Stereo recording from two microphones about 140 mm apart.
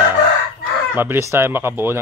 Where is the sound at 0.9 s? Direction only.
15° right (ahead or behind).